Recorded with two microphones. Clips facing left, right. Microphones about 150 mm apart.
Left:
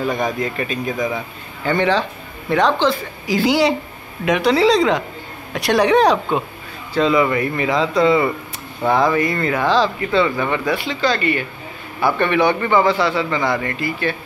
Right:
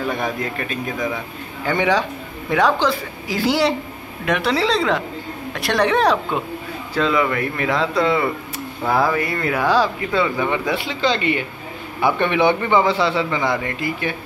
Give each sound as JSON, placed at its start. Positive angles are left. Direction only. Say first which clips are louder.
{"t": 0.1, "sound": "a man's voice", "louder": "left 3 dB", "side_deg": 0}